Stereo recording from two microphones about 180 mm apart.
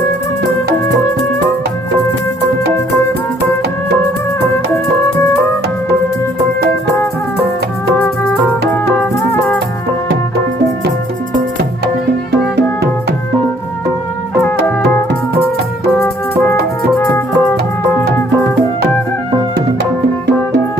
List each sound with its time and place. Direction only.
6.8 s music: 15° left (ahead or behind)
16.0 s music: 10° left (ahead or behind)